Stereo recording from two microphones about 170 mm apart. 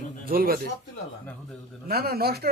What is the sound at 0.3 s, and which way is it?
Speech, 60° right (ahead or behind).